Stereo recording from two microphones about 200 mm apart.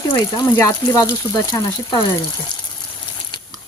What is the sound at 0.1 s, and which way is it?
Speech, 20° left (ahead or behind).